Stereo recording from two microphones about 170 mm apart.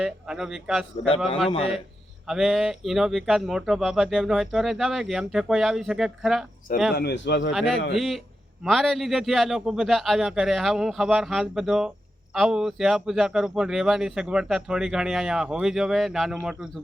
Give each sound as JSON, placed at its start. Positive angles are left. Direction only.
{"t": 0.0, "sound": "a man's voice", "side_deg": -5}
{"t": 1.5, "sound": "a man's voice", "side_deg": 35}
{"t": 2.2, "sound": "a man's voice", "side_deg": 0}
{"t": 6.9, "sound": "speech", "side_deg": 75}
{"t": 7.5, "sound": "a man's voice", "side_deg": 0}